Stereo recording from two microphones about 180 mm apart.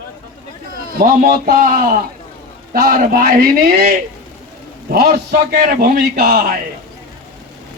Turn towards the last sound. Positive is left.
turn(degrees=-55)  # may be behind; listen again after turning